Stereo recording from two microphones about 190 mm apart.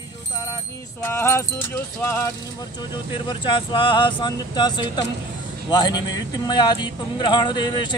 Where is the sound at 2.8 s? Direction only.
25° left (ahead or behind).